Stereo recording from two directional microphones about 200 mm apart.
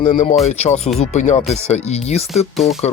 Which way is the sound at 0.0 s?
35° left (ahead or behind).